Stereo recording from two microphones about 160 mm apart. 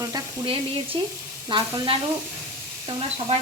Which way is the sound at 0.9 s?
30° right (ahead or behind).